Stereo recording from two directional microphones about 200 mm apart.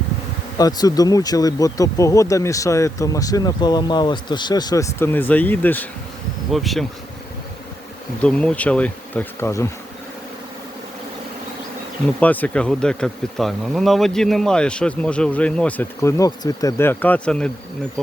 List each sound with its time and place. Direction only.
0.6 s speech: 20° left (ahead or behind); by 6.8 s centre (ahead or behind)
8.2 s speech: 5° left (ahead or behind)
12.2 s speech: 10° left (ahead or behind)